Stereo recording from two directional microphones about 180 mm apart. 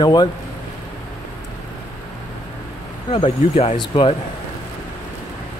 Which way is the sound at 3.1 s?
30° left (ahead or behind).